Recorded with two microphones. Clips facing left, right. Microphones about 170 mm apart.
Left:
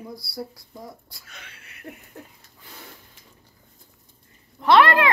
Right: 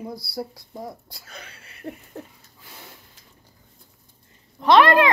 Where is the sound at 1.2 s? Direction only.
35° right (ahead or behind).